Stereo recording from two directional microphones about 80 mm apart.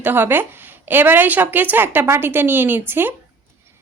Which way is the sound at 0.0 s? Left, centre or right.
Right.